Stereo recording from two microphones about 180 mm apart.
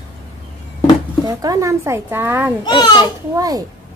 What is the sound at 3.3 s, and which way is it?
Speech, 20° right (ahead or behind).